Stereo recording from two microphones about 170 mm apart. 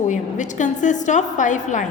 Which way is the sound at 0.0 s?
45° left (ahead or behind).